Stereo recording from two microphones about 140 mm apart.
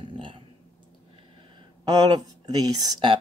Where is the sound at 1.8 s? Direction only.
30° right (ahead or behind).